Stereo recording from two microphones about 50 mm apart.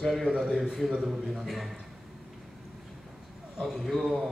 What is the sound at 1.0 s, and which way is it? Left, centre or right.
Speech, centre.